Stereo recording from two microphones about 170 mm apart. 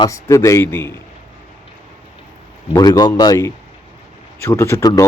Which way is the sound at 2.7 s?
25° left (ahead or behind).